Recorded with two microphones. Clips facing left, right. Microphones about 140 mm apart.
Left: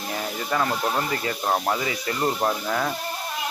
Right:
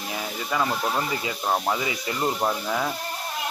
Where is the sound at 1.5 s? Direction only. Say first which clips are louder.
Left 1 dB; 5° left (ahead or behind).